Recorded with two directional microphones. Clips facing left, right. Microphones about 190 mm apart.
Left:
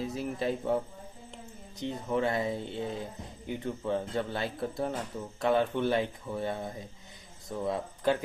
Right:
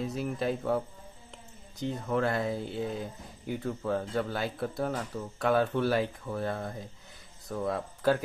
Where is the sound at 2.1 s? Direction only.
Centre (ahead or behind).